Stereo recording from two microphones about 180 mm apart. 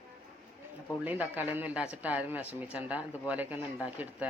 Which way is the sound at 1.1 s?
10° right (ahead or behind).